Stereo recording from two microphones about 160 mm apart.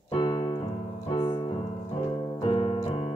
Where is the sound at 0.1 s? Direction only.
30° left (ahead or behind).